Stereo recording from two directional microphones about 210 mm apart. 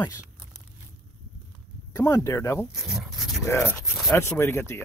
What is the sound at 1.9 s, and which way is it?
Speech, 15° left (ahead or behind).